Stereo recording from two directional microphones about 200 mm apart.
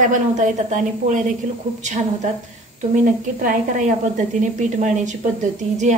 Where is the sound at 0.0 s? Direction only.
40° right (ahead or behind).